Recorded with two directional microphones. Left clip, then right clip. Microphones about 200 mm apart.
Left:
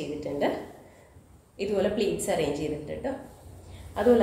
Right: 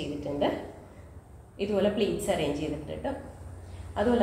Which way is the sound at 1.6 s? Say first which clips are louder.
Even; 20° left (ahead or behind).